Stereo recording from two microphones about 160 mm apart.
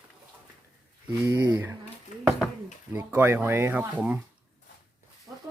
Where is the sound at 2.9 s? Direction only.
10° right (ahead or behind).